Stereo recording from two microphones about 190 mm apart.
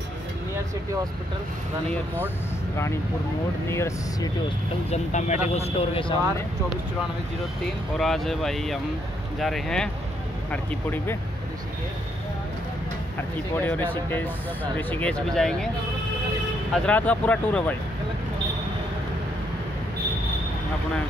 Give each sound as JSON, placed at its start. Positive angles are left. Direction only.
{"t": 1.9, "sound": "speech", "side_deg": 10}
{"t": 3.6, "sound": "speech", "side_deg": 15}
{"t": 4.9, "sound": "speech", "side_deg": 40}
{"t": 7.6, "sound": "speech", "side_deg": 0}
{"t": 13.6, "sound": "speech", "side_deg": 10}
{"t": 16.7, "sound": "speech", "side_deg": 5}